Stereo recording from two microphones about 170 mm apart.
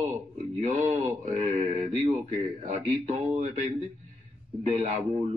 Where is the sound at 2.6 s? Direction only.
40° right (ahead or behind).